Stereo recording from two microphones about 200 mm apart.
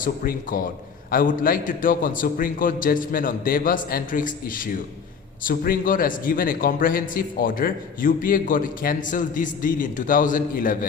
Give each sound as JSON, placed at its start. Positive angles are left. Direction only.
{"t": 0.0, "sound": "a man's voice", "side_deg": 45}